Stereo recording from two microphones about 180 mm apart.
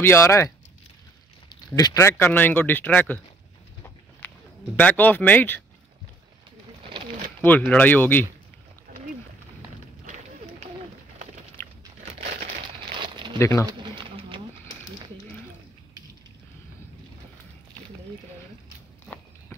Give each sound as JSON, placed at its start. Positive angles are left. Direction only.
{"t": 0.0, "sound": "speech", "side_deg": 15}
{"t": 1.5, "sound": "speech", "side_deg": 20}
{"t": 4.2, "sound": "a sound", "side_deg": 10}
{"t": 4.7, "sound": "speech", "side_deg": 10}
{"t": 7.4, "sound": "speech", "side_deg": 10}
{"t": 10.0, "sound": "run", "side_deg": -45}
{"t": 12.0, "sound": "crumpling", "side_deg": -35}
{"t": 13.4, "sound": "speech", "side_deg": 15}
{"t": 13.7, "sound": "pigeon", "side_deg": -25}